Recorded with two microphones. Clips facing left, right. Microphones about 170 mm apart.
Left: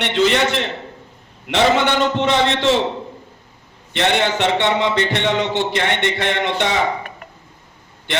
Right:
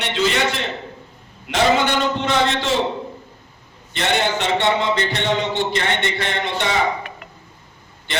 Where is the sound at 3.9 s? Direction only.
65° left (ahead or behind).